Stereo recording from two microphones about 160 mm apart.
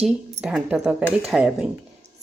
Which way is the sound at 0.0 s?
Centre (ahead or behind).